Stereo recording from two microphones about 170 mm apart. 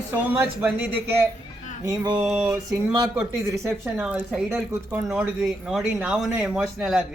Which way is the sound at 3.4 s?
15° right (ahead or behind).